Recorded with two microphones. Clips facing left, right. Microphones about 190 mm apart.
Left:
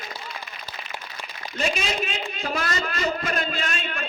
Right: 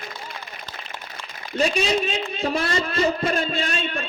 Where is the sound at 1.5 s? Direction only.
35° right (ahead or behind).